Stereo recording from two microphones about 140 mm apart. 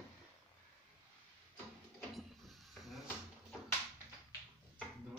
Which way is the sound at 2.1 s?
Centre (ahead or behind).